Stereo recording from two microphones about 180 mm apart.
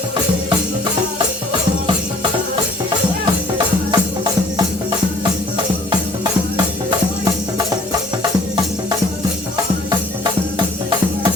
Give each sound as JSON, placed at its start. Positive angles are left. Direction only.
{"t": 3.9, "sound": "music", "side_deg": -25}